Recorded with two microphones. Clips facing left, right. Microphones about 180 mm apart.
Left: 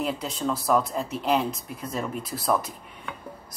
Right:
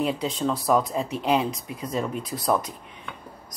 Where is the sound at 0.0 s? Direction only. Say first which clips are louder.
Right 3 dB; centre (ahead or behind).